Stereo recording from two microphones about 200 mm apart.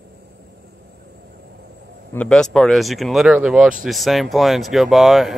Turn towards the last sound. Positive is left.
turn(degrees=0)  # may be behind; listen again after turning